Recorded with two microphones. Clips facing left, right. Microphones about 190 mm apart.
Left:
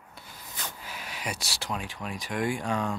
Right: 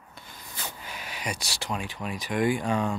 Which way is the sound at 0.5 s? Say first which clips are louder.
Right 1 dB; centre (ahead or behind).